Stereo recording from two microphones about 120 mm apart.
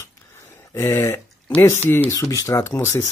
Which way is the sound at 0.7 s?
20° left (ahead or behind).